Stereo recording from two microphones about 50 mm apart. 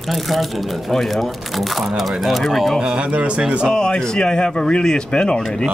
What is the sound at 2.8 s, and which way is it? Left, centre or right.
Speech, right.